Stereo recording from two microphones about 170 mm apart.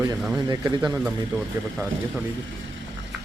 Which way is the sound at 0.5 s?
25° right (ahead or behind).